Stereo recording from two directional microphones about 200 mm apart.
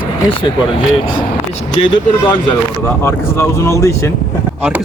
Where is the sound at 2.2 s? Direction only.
20° left (ahead or behind).